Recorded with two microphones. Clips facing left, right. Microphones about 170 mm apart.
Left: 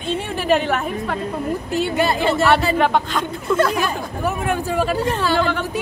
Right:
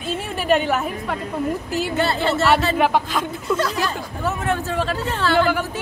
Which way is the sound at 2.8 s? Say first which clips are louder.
Left 1 dB; 5° right (ahead or behind).